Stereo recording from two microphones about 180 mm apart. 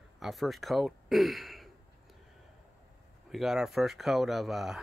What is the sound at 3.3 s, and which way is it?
Speech, centre (ahead or behind).